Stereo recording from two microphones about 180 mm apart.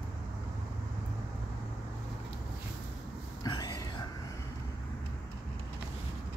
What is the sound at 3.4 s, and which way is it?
Whispering, 20° left (ahead or behind).